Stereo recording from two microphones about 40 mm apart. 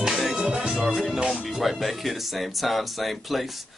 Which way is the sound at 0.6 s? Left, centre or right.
Centre.